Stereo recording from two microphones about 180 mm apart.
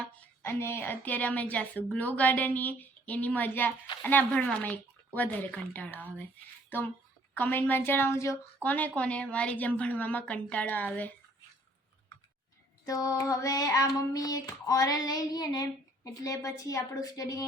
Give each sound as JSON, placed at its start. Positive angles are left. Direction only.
{"t": 0.4, "sound": "a woman's voice", "side_deg": 10}
{"t": 12.8, "sound": "child singing", "side_deg": 20}